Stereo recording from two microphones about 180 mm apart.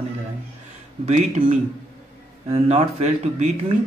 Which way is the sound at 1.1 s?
35° right (ahead or behind).